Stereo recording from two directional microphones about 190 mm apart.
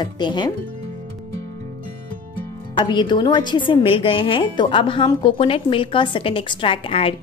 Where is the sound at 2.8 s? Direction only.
25° left (ahead or behind).